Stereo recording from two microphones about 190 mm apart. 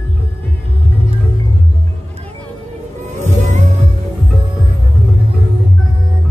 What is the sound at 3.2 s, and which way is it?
Music, 35° right (ahead or behind).